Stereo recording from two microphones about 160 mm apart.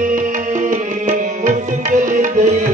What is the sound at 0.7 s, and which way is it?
Music, 55° right (ahead or behind).